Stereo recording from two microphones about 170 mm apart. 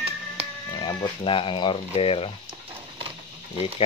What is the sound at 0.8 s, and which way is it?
Speech, 30° left (ahead or behind).